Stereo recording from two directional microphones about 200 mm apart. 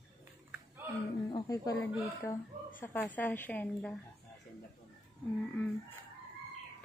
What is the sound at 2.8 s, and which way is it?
A woman's voice, 10° left (ahead or behind).